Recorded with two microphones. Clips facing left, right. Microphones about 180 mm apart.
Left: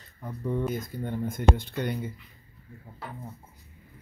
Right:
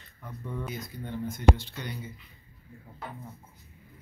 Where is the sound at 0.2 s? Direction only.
30° left (ahead or behind).